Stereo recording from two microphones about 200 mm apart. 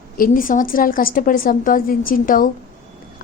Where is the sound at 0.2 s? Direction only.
45° left (ahead or behind).